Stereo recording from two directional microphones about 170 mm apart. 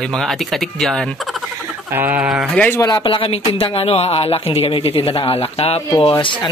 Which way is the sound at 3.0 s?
30° left (ahead or behind).